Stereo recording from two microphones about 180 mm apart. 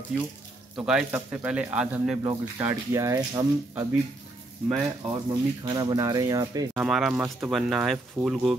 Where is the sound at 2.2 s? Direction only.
20° right (ahead or behind).